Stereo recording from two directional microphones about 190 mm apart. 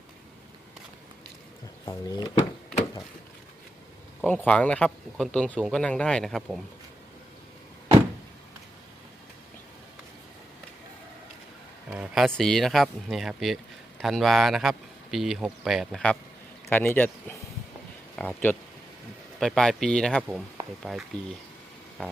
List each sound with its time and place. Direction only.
1.8 s speech: 20° left (ahead or behind)
4.2 s speech: 10° left (ahead or behind)
11.9 s speech: 5° right (ahead or behind)